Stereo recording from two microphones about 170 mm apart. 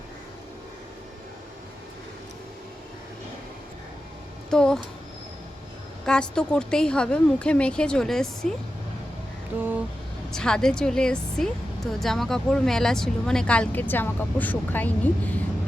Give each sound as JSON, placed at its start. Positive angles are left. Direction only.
{"t": 4.4, "sound": "speech", "side_deg": 5}
{"t": 6.1, "sound": "a woman's voice", "side_deg": 5}
{"t": 10.3, "sound": "a woman's voice", "side_deg": 5}